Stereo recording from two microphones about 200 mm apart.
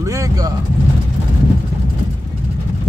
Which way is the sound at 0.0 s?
15° right (ahead or behind).